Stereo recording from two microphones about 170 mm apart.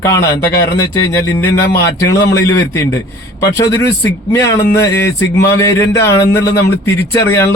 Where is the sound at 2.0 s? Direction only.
15° left (ahead or behind).